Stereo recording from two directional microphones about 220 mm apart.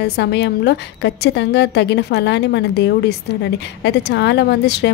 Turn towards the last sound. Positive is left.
turn(degrees=50)  # may be behind; listen again after turning